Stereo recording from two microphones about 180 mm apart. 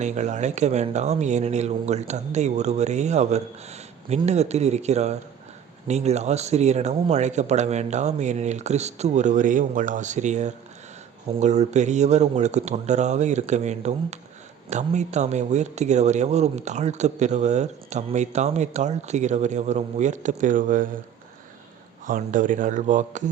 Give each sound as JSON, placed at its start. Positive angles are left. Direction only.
{"t": 0.0, "sound": "speech", "side_deg": -40}
{"t": 22.0, "sound": "speech", "side_deg": -45}